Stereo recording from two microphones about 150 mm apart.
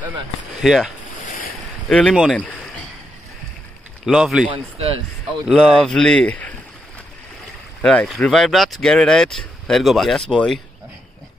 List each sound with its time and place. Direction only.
0.6 s speech: centre (ahead or behind)
2.3 s a sound: 10° left (ahead or behind)
4.0 s speech: 5° right (ahead or behind)
4.5 s speech: 40° right (ahead or behind)
5.5 s speech: 5° left (ahead or behind)
7.8 s speech: 5° left (ahead or behind)